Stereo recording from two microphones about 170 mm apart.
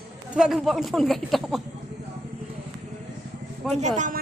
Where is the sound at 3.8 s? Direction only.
45° right (ahead or behind).